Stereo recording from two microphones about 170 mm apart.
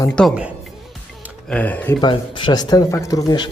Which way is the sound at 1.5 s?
10° left (ahead or behind).